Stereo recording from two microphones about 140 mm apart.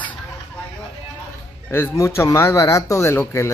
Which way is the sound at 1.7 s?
20° left (ahead or behind).